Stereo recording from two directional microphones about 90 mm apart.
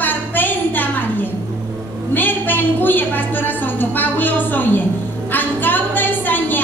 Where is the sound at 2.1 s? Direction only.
20° left (ahead or behind).